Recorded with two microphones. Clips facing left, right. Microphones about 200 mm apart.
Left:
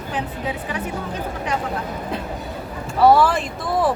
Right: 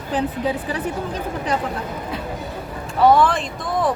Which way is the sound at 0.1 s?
35° right (ahead or behind).